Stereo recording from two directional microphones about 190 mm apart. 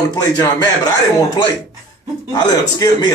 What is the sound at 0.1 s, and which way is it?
A man's voice, 20° left (ahead or behind).